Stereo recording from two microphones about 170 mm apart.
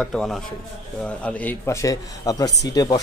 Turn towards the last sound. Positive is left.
turn(degrees=20)  # may be behind; listen again after turning